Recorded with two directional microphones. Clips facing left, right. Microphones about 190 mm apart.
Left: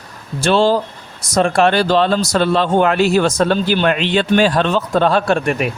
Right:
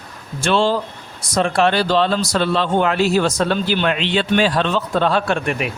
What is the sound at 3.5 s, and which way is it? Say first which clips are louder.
Speech: left 3 dB; 45° left (ahead or behind).